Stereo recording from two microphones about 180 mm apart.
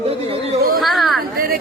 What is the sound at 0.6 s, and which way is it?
Speech, 55° right (ahead or behind).